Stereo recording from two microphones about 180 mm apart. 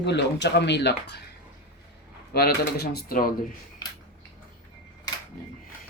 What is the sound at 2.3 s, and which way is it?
Speech, 60° left (ahead or behind).